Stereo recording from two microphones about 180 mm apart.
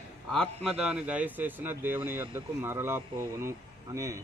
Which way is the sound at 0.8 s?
5° right (ahead or behind).